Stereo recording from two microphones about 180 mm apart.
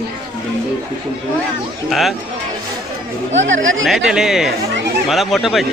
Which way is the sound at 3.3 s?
90° right.